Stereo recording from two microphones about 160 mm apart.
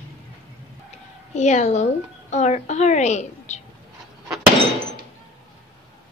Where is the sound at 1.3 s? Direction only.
45° left (ahead or behind).